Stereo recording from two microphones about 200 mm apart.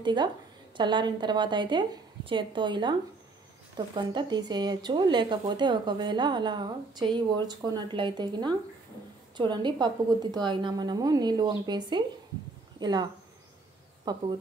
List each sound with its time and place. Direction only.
0.0 s speech: 20° right (ahead or behind)